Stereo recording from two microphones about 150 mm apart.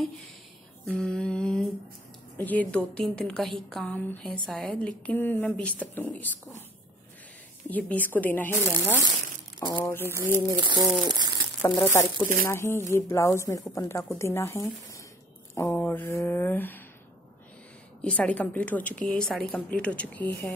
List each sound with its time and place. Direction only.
0.8 s a sound: 5° left (ahead or behind)
2.3 s a woman's voice: 10° left (ahead or behind)
7.7 s a woman's voice: 10° left (ahead or behind)
8.6 s speech: 15° right (ahead or behind)
9.8 s a woman's voice: 15° left (ahead or behind)
10.0 s speech: 15° right (ahead or behind)
10.5 s speech: 30° right (ahead or behind)
11.1 s crumpling: 30° right (ahead or behind)
11.8 s a woman's voice: 15° left (ahead or behind)
18.0 s a woman's voice: 5° left (ahead or behind)